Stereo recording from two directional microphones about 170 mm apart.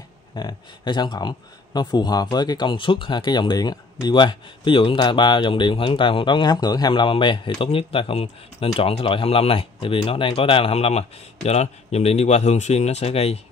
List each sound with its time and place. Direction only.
0.3 s speech: 25° left (ahead or behind)